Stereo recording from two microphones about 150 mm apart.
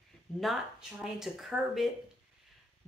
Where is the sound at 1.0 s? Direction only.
Centre (ahead or behind).